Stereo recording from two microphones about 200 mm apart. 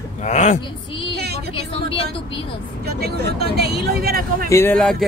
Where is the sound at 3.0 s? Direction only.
55° right (ahead or behind).